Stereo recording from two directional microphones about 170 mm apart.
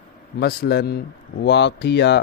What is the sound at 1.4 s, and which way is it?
Speech, 90° left.